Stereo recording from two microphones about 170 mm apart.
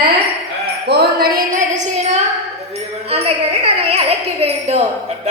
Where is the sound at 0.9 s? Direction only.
70° right (ahead or behind).